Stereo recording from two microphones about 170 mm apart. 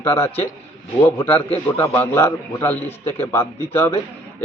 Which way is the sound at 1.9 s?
10° left (ahead or behind).